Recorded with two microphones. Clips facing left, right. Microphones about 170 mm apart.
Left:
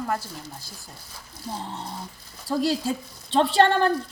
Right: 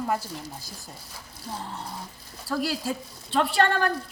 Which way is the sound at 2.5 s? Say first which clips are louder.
Left 4 dB; 20° left (ahead or behind).